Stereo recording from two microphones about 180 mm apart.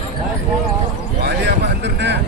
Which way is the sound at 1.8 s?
75° right (ahead or behind).